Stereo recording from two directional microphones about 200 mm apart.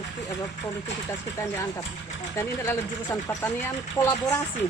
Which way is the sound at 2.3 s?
10° left (ahead or behind).